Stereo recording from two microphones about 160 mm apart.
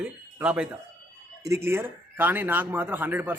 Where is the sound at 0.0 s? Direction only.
10° right (ahead or behind).